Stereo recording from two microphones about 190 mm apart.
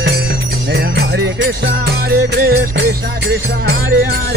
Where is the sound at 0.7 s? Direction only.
60° right (ahead or behind).